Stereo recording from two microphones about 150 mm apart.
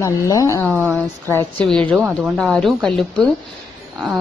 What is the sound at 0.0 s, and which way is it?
Speech, 20° left (ahead or behind).